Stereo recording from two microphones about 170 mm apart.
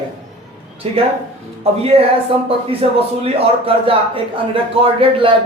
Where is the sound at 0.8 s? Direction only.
35° right (ahead or behind).